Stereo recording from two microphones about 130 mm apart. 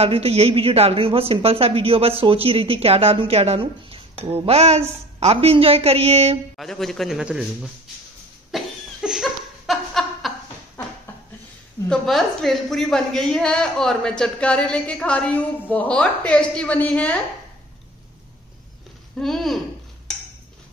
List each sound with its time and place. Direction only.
0.0 s speech: 50° right (ahead or behind)
6.5 s a man's voice: 5° left (ahead or behind)
8.5 s a sound: 5° right (ahead or behind)
11.9 s a woman's voice: centre (ahead or behind)
19.2 s a man's voice: centre (ahead or behind)